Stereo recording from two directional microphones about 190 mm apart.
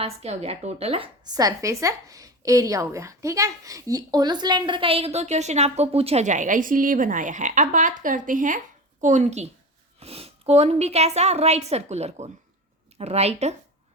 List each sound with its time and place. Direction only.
0.0 s a woman's voice: 30° right (ahead or behind)